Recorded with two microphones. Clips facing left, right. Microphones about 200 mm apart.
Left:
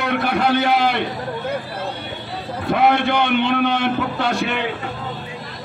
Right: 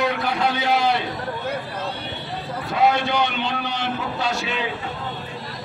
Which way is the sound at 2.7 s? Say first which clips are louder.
Left 3 dB; 55° left (ahead or behind).